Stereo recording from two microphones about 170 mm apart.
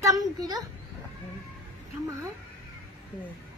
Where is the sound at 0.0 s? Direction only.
20° right (ahead or behind).